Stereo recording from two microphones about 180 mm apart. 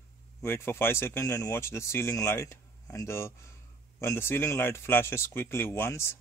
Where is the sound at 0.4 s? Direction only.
15° left (ahead or behind).